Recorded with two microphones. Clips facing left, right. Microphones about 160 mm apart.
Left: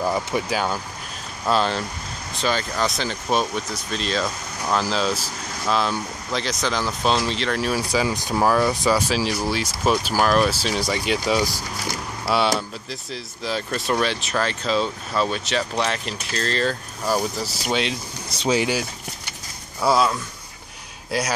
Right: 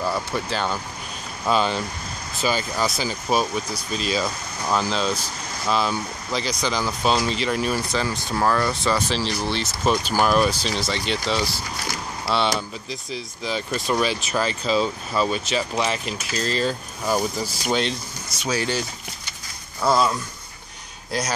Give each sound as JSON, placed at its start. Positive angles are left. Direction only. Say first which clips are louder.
{"t": 0.0, "sound": "speech", "louder": "left 2 dB", "side_deg": 15}
{"t": 18.4, "sound": "speech", "louder": "left 5 dB", "side_deg": 20}
{"t": 19.8, "sound": "speech", "louder": "left 1 dB", "side_deg": 5}